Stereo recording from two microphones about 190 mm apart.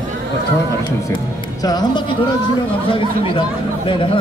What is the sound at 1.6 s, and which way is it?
Speech, 20° left (ahead or behind).